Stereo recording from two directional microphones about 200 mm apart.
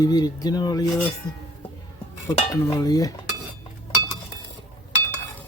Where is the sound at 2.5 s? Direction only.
20° left (ahead or behind).